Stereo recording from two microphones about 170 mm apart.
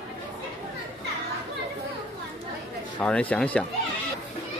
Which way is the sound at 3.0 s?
10° left (ahead or behind).